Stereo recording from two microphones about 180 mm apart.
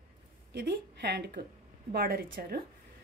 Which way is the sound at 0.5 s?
65° right (ahead or behind).